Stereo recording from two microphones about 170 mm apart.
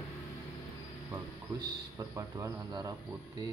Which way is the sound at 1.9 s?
20° right (ahead or behind).